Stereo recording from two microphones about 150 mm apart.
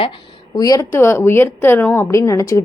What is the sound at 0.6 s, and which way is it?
A woman's voice, 25° left (ahead or behind).